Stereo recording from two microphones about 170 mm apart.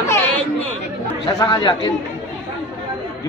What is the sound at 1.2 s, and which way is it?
Speech, 25° left (ahead or behind).